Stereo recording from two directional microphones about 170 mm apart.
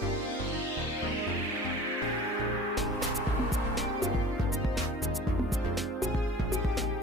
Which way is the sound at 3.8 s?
Centre (ahead or behind).